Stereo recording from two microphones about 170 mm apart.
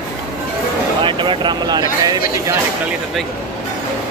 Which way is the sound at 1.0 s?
30° right (ahead or behind).